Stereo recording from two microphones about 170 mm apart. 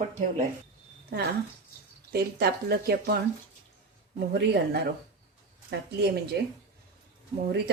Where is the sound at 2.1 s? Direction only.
70° right (ahead or behind).